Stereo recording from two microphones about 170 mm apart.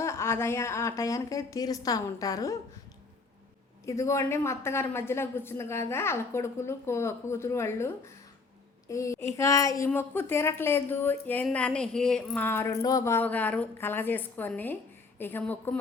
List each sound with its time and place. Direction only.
0.0 s a woman's voice: 15° left (ahead or behind)
3.8 s a woman's voice: 15° left (ahead or behind)